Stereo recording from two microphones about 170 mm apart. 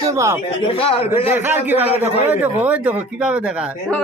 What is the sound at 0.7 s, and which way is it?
Speech, 35° left (ahead or behind).